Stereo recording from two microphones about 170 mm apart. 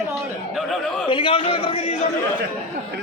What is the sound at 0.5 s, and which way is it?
Speech, centre (ahead or behind).